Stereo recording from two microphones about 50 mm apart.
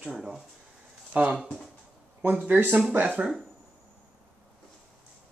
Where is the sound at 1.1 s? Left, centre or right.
Right.